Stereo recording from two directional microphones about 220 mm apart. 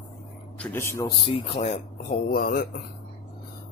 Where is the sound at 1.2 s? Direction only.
25° left (ahead or behind); by 2.6 s 45° left (ahead or behind).